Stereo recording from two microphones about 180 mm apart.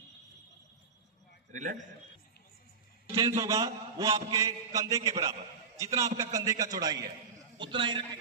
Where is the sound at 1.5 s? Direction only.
45° right (ahead or behind).